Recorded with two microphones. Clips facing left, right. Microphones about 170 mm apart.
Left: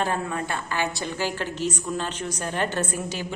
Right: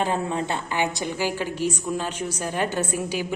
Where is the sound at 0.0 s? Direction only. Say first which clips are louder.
Right 2 dB; 20° right (ahead or behind).